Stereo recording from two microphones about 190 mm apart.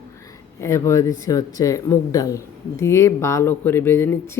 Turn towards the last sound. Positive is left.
turn(degrees=15)  # may be behind; listen again after turning